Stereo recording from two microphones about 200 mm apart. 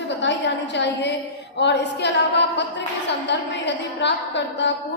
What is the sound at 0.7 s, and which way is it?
A woman's voice, 60° left (ahead or behind).